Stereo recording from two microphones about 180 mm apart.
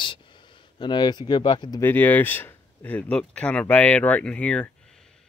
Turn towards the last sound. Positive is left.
turn(degrees=5)  # may be behind; listen again after turning